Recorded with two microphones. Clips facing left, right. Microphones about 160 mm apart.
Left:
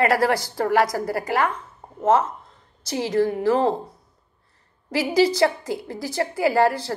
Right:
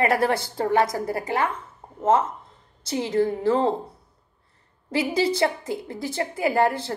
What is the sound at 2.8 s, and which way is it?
Speech, 25° right (ahead or behind).